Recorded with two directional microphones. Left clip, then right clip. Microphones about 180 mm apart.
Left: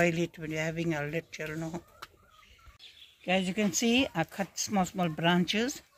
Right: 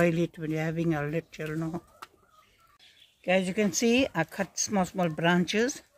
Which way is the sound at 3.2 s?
25° right (ahead or behind).